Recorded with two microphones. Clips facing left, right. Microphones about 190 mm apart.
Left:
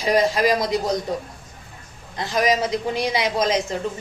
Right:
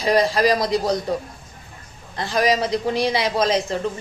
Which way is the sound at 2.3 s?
30° right (ahead or behind).